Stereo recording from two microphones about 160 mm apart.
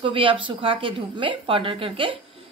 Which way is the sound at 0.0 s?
35° right (ahead or behind).